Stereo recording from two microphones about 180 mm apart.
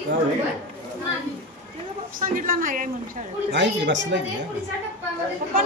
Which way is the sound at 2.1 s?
50° right (ahead or behind).